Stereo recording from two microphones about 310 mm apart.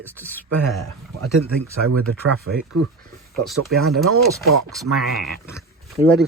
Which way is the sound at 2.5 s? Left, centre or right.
Right.